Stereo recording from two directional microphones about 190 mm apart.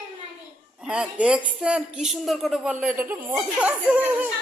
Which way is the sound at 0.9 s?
5° right (ahead or behind).